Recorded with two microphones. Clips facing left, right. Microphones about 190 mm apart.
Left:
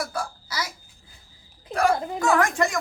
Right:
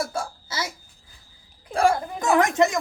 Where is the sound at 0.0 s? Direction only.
25° right (ahead or behind).